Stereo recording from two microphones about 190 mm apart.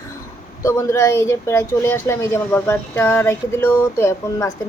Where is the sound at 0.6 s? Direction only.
15° left (ahead or behind).